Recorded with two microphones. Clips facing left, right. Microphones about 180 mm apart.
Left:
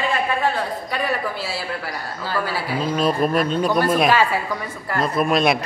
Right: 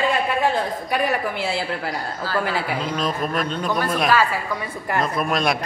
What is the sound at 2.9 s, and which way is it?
Speech, 10° left (ahead or behind).